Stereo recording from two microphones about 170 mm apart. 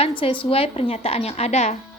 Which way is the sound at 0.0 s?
30° left (ahead or behind).